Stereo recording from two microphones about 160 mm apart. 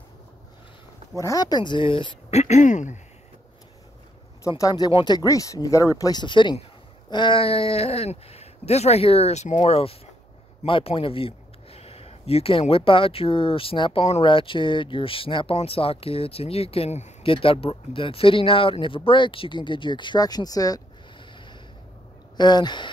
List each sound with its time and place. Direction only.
1.1 s speech: 20° left (ahead or behind)
2.4 s speech: 50° left (ahead or behind)
4.6 s speech: 25° left (ahead or behind)
22.4 s speech: 25° left (ahead or behind)